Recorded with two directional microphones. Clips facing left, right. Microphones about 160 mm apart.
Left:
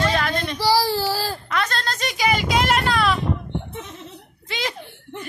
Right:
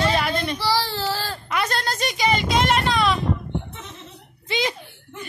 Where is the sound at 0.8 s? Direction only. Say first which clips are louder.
Left 4 dB; 10° left (ahead or behind).